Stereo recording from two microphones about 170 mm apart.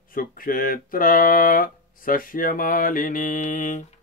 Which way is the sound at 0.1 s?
55° left (ahead or behind).